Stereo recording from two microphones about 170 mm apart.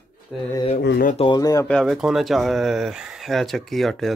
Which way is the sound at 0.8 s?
70° left (ahead or behind).